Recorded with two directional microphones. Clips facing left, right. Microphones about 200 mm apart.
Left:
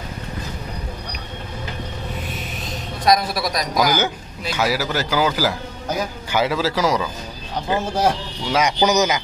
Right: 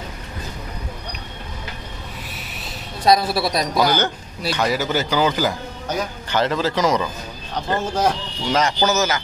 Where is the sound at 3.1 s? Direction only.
30° right (ahead or behind).